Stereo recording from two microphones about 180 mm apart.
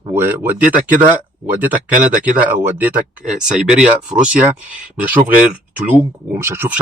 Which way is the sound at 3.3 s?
5° right (ahead or behind).